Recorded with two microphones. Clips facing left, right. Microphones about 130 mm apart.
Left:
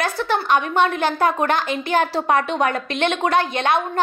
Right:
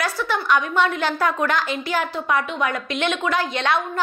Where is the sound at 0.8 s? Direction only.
45° left (ahead or behind).